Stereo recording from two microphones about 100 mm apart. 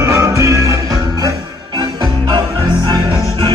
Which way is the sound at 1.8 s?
50° right (ahead or behind).